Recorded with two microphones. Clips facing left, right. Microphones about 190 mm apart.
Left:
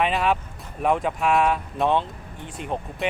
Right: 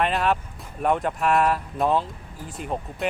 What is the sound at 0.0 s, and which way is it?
Speech, centre (ahead or behind).